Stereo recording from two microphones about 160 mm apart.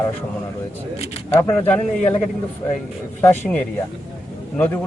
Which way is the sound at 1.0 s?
40° left (ahead or behind).